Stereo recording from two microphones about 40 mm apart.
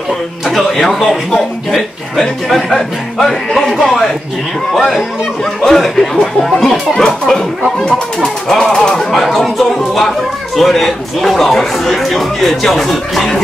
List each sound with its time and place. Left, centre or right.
0.5 s speech: centre
2.1 s speech: centre
5.4 s speech: centre
7.0 s speech: centre
9.1 s speech: centre